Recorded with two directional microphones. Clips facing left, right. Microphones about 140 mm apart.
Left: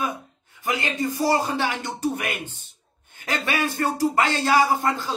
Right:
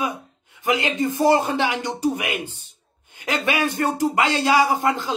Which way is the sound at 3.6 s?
20° right (ahead or behind).